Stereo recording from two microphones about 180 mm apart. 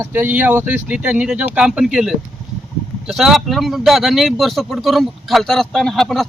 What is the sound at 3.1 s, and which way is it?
Speech, centre (ahead or behind).